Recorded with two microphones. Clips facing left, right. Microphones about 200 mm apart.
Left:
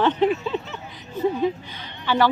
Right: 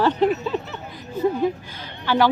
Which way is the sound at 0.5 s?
40° right (ahead or behind).